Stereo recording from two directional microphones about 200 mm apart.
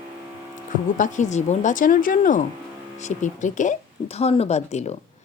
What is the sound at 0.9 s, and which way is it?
Speech, 40° left (ahead or behind).